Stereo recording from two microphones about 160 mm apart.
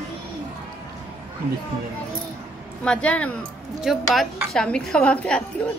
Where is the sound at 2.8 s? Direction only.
5° left (ahead or behind).